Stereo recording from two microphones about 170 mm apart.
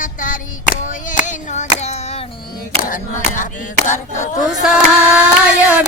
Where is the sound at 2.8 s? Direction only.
50° left (ahead or behind).